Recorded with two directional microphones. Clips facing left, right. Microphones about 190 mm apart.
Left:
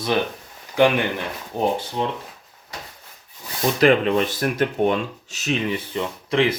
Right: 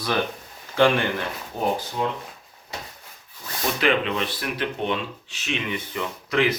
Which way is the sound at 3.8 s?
45° left (ahead or behind).